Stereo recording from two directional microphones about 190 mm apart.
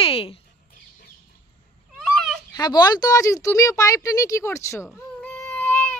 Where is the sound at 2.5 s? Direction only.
20° left (ahead or behind).